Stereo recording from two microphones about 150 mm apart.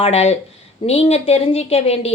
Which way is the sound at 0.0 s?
45° left (ahead or behind).